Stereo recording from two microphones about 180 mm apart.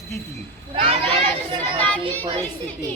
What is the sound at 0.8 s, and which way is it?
Speech, 30° right (ahead or behind).